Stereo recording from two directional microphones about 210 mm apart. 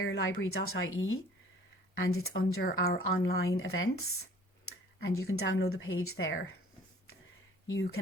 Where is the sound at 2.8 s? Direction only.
50° left (ahead or behind).